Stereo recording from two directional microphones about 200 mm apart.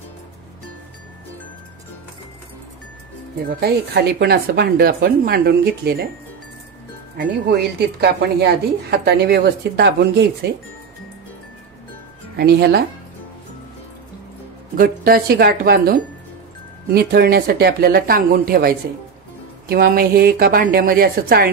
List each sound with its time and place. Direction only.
3.4 s speech: 55° right (ahead or behind)
7.2 s speech: 55° right (ahead or behind)
12.4 s speech: 55° right (ahead or behind)
14.8 s speech: 50° right (ahead or behind)